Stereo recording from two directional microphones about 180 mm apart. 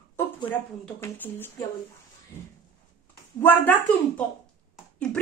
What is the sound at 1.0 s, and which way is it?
Speech, 10° left (ahead or behind).